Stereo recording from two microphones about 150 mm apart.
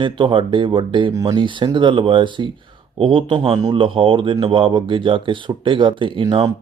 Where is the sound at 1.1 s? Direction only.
25° right (ahead or behind).